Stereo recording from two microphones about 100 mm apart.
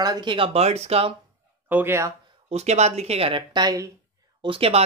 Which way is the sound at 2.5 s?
90° right.